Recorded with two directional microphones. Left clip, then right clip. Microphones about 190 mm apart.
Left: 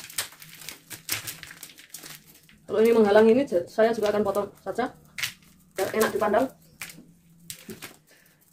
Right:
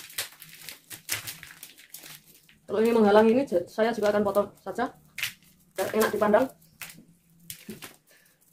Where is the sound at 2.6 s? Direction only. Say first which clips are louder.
Left 3 dB; 15° right (ahead or behind).